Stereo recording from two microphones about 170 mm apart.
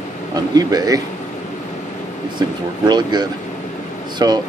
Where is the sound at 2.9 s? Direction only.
25° right (ahead or behind).